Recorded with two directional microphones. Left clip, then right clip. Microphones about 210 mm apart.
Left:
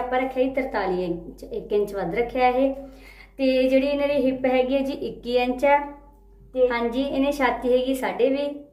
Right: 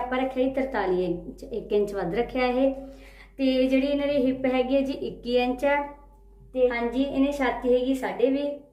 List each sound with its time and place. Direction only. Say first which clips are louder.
0.1 s a woman's voice: left 4 dB; 20° right (ahead or behind)
3.3 s speech: left 4 dB; centre (ahead or behind)
6.7 s a woman's voice: left 2 dB; 15° left (ahead or behind)